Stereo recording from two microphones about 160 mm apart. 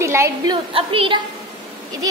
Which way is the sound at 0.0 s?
15° right (ahead or behind).